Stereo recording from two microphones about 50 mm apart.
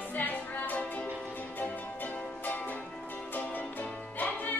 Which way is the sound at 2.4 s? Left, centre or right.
Left.